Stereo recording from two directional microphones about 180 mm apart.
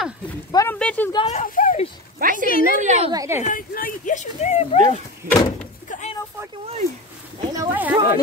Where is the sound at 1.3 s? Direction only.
50° left (ahead or behind).